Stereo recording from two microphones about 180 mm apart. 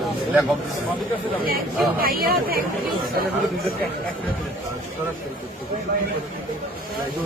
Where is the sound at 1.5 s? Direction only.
55° right (ahead or behind).